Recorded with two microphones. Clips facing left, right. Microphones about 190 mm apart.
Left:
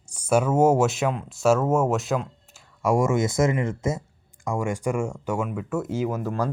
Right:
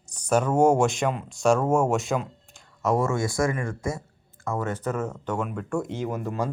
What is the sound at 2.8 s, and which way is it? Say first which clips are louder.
Speech: left 3 dB; 10° left (ahead or behind).